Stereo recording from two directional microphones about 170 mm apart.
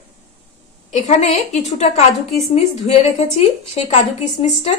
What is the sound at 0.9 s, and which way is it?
A woman's voice, 40° left (ahead or behind).